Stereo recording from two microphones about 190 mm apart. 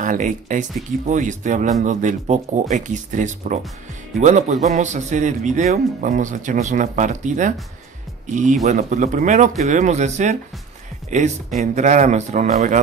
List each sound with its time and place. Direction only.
0.0 s a man's voice: 40° right (ahead or behind)
8.6 s a man's voice: 40° right (ahead or behind)